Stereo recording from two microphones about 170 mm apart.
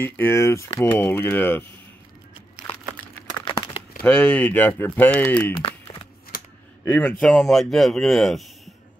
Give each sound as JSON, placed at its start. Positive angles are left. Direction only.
{"t": 0.0, "sound": "speech", "side_deg": 15}
{"t": 3.3, "sound": "crumpling", "side_deg": 20}
{"t": 4.0, "sound": "speech", "side_deg": 10}
{"t": 5.6, "sound": "a sound", "side_deg": 35}
{"t": 6.3, "sound": "a sound", "side_deg": 60}
{"t": 6.8, "sound": "speech", "side_deg": 10}